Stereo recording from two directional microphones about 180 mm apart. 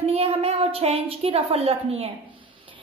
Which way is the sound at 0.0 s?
35° right (ahead or behind).